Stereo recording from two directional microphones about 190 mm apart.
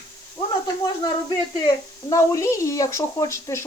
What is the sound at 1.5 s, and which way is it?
Speech, 20° left (ahead or behind).